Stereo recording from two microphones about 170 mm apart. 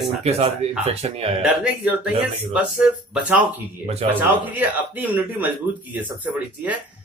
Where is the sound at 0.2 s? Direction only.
40° right (ahead or behind).